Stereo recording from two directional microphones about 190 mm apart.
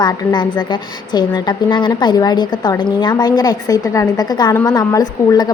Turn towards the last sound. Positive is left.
turn(degrees=20)  # may be behind; listen again after turning